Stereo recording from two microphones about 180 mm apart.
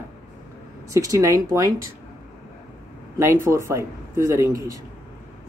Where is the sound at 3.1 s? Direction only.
15° right (ahead or behind).